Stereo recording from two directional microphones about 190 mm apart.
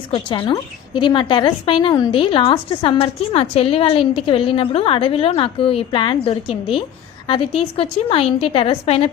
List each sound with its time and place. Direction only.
0.1 s a woman's voice: 25° left (ahead or behind)